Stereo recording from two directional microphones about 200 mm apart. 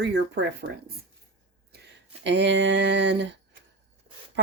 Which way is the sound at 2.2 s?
60° right (ahead or behind).